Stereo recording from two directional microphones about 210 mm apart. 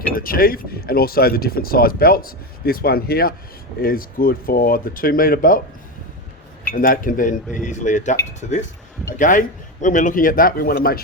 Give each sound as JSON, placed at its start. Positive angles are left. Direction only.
{"t": 0.1, "sound": "speech", "side_deg": 45}
{"t": 6.7, "sound": "speech", "side_deg": 40}
{"t": 9.1, "sound": "speech", "side_deg": 40}